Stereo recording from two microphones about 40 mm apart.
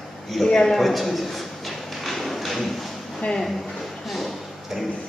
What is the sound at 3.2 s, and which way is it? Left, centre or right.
Speech, left.